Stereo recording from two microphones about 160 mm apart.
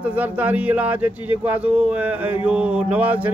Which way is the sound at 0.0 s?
10° right (ahead or behind).